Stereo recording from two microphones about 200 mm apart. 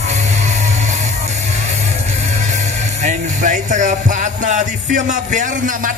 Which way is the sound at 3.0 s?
40° right (ahead or behind).